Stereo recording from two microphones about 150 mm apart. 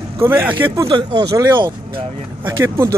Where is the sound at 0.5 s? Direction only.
35° right (ahead or behind).